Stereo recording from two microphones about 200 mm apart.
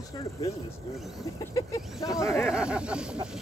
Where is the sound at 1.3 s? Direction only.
15° left (ahead or behind).